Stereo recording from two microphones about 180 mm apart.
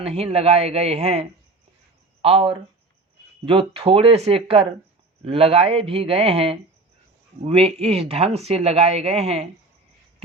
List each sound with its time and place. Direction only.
0.0 s speech: 35° right (ahead or behind)